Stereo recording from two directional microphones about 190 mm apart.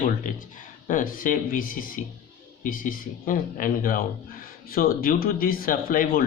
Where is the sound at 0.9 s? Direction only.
45° left (ahead or behind).